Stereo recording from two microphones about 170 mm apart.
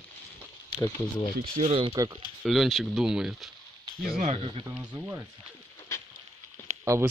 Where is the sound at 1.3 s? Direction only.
65° right (ahead or behind).